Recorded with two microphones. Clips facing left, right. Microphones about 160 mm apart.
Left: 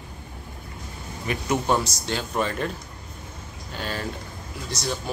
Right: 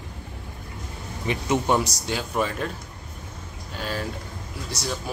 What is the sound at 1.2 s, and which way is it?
Speech, 20° right (ahead or behind).